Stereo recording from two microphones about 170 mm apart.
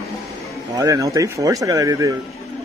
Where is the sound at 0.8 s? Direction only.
20° right (ahead or behind).